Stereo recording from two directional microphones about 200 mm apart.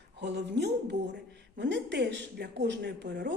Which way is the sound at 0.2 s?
55° right (ahead or behind).